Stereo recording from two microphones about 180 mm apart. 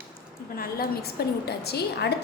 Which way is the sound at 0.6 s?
55° left (ahead or behind).